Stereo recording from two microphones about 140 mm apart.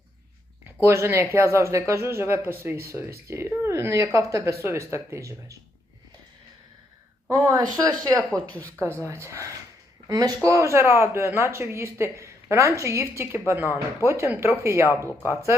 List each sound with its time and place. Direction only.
0.8 s speech: 20° right (ahead or behind)
7.3 s speech: 25° right (ahead or behind)